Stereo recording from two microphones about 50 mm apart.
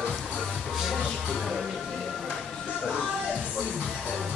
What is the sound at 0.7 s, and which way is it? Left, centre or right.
Music, centre.